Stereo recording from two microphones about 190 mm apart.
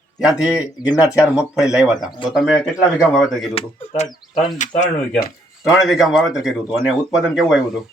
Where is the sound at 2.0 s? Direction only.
25° left (ahead or behind).